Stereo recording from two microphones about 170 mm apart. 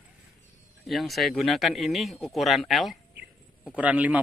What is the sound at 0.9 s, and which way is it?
Speech, centre (ahead or behind).